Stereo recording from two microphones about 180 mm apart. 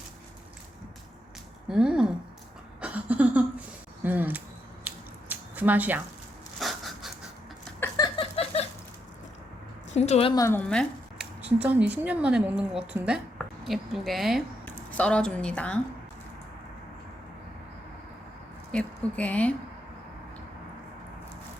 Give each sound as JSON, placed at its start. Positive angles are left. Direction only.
{"t": 1.6, "sound": "speech", "side_deg": -5}
{"t": 2.8, "sound": "a sound", "side_deg": -10}
{"t": 4.0, "sound": "scissors", "side_deg": -10}
{"t": 6.6, "sound": "pant", "side_deg": 0}
{"t": 7.8, "sound": "a sound", "side_deg": 20}
{"t": 9.9, "sound": "a woman's voice", "side_deg": 40}
{"t": 10.3, "sound": "speech", "side_deg": 15}
{"t": 11.4, "sound": "a woman's voice", "side_deg": -10}
{"t": 18.7, "sound": "speech", "side_deg": 5}